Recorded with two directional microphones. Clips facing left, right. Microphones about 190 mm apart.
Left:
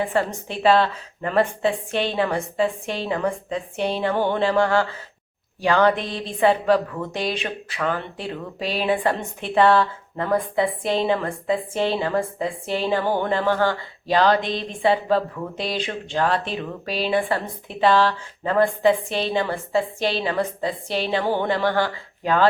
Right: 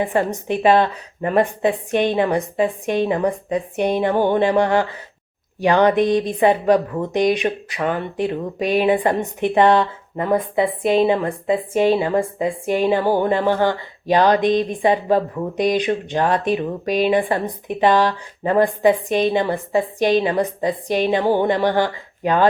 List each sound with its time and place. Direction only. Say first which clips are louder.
0.0 s a woman's voice: right 3 dB; 20° right (ahead or behind)